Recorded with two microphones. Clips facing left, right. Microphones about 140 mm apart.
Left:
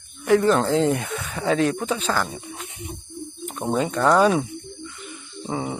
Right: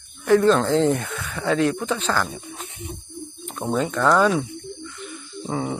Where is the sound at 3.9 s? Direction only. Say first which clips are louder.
Left 1 dB; 20° left (ahead or behind).